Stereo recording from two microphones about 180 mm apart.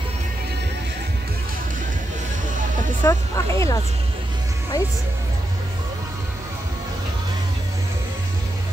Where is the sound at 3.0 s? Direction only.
15° left (ahead or behind).